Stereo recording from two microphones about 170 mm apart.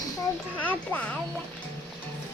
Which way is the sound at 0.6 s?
10° left (ahead or behind).